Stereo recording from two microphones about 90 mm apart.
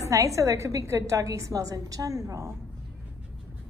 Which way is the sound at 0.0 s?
35° right (ahead or behind).